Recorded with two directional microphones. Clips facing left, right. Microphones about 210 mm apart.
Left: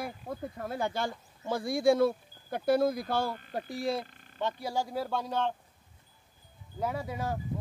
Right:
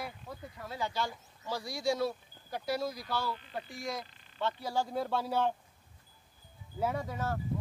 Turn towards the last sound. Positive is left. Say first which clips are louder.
# left 1 dB
turn(degrees=10)  # may be behind; listen again after turning